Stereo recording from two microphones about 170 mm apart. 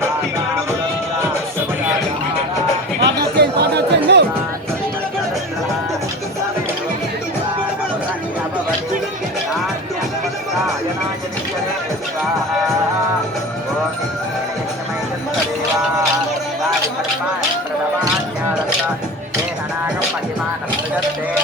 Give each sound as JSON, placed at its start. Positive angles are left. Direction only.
{"t": 3.0, "sound": "chatter", "side_deg": -75}